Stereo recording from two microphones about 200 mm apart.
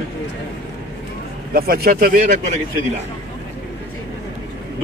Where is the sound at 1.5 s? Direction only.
50° right (ahead or behind).